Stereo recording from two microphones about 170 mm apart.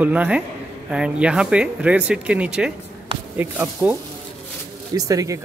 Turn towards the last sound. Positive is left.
turn(degrees=-20)  # may be behind; listen again after turning